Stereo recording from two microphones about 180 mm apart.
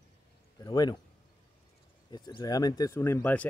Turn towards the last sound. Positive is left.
turn(degrees=10)  # may be behind; listen again after turning